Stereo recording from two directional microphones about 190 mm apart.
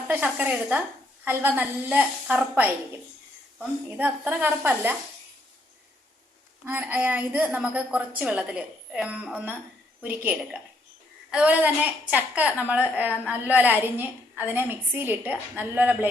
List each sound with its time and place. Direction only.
0.1 s a woman's voice: 5° right (ahead or behind)
3.8 s a woman's voice: 10° right (ahead or behind)
6.7 s a woman's voice: 10° right (ahead or behind)